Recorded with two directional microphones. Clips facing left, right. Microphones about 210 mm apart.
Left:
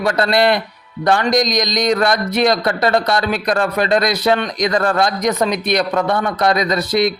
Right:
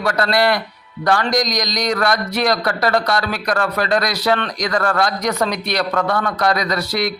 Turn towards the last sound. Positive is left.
turn(degrees=20)  # may be behind; listen again after turning